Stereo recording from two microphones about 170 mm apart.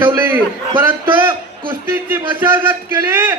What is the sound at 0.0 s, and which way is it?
Speech, 15° right (ahead or behind).